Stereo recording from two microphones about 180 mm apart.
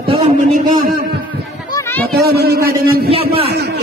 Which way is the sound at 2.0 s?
60° right (ahead or behind).